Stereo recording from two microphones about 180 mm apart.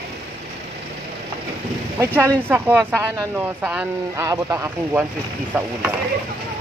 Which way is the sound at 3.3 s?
5° right (ahead or behind).